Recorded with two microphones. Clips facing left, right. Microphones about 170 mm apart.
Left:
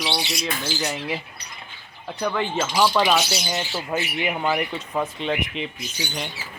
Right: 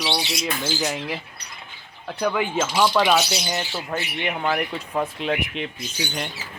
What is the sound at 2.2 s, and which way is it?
Speech, 5° right (ahead or behind).